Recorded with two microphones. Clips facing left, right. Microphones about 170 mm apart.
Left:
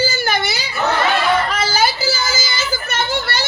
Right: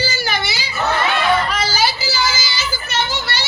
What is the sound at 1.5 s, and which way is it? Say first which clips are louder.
Children playing: left 1 dB; 50° left (ahead or behind).